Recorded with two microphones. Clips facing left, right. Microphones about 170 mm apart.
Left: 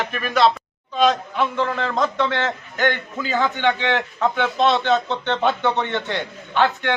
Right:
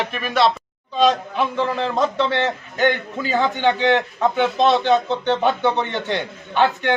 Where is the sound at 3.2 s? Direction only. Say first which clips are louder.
Right 2 dB; 15° right (ahead or behind).